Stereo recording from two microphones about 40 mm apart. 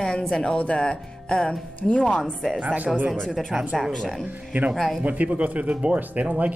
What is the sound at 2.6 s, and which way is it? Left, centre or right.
Speech, right.